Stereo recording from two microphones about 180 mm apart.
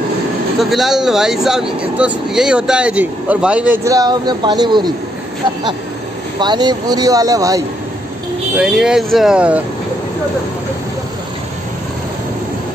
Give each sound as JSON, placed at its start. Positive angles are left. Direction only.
{"t": 0.6, "sound": "speech", "side_deg": 0}
{"t": 6.4, "sound": "speech", "side_deg": -25}
{"t": 8.5, "sound": "speech", "side_deg": -5}